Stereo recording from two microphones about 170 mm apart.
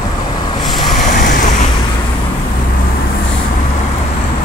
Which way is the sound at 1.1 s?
50° left (ahead or behind).